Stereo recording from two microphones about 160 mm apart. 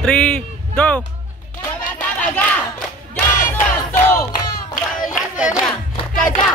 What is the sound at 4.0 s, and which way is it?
Battle cry, 10° left (ahead or behind).